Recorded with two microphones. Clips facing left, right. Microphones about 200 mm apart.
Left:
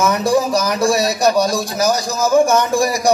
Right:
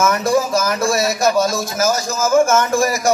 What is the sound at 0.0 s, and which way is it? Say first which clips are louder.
Speech: left 1 dB; 15° left (ahead or behind).